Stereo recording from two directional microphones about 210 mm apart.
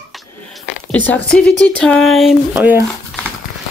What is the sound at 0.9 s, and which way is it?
Speech, 10° left (ahead or behind).